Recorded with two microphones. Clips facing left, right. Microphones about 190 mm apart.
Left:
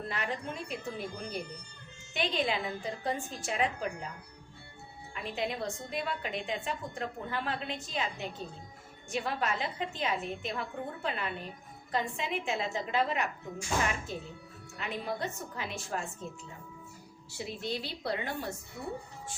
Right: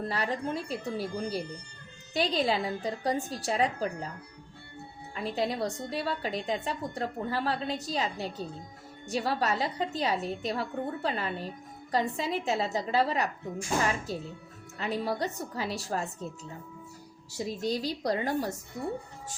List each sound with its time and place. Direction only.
0.1 s a woman's voice: 35° right (ahead or behind)
5.1 s a woman's voice: 35° right (ahead or behind)
14.8 s a woman's voice: 35° right (ahead or behind)
17.3 s a woman's voice: 40° right (ahead or behind)